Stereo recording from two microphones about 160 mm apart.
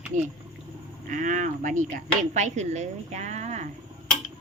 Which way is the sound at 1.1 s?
50° right (ahead or behind).